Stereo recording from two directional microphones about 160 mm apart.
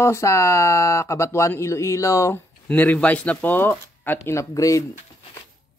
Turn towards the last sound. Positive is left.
turn(degrees=20)  # may be behind; listen again after turning